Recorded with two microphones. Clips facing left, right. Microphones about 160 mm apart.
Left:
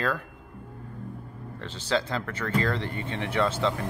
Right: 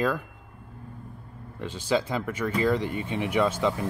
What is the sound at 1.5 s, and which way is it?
Speech, 15° right (ahead or behind).